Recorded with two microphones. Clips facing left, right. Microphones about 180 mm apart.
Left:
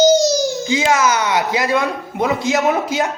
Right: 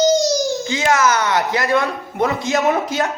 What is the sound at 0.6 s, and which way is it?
Speech, 20° left (ahead or behind).